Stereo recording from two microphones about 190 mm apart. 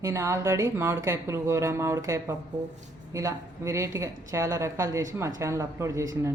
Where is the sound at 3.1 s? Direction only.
15° right (ahead or behind).